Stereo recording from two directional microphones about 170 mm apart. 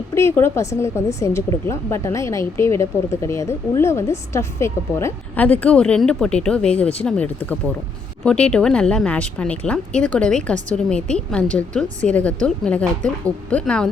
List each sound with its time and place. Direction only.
0.1 s a woman's voice: 15° left (ahead or behind)